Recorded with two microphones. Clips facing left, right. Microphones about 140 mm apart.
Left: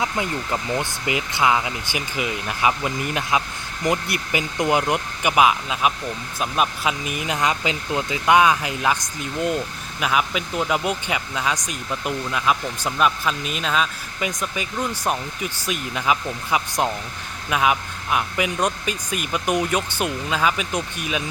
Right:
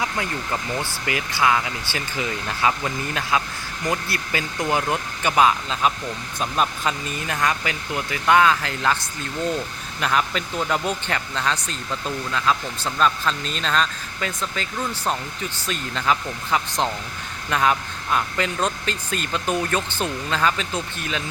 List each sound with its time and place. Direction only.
0.0 s speech: 20° left (ahead or behind)